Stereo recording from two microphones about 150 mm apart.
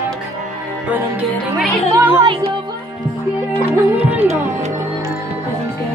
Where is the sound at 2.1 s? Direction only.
35° right (ahead or behind).